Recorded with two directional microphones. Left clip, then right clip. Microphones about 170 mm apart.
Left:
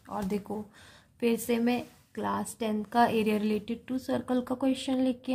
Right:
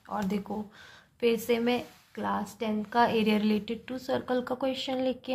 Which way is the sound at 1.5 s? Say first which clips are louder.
Right 2 dB; 30° left (ahead or behind).